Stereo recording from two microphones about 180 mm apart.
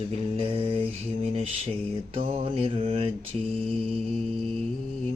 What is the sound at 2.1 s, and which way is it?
Mantra, 35° right (ahead or behind).